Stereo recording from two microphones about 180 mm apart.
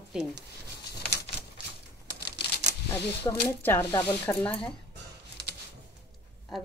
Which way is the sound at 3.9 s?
20° left (ahead or behind).